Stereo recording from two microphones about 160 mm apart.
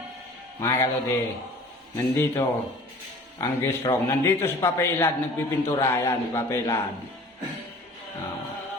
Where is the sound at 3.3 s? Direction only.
15° left (ahead or behind).